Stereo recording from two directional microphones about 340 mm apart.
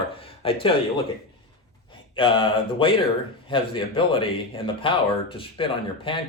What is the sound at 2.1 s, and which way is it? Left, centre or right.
Speech, centre.